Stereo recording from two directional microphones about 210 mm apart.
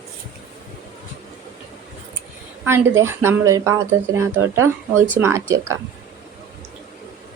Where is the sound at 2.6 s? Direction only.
10° right (ahead or behind).